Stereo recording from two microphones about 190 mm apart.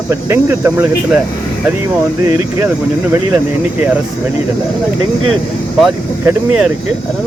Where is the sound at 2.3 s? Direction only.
10° right (ahead or behind).